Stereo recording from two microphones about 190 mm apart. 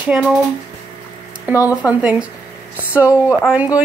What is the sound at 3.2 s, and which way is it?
Speech, 10° right (ahead or behind).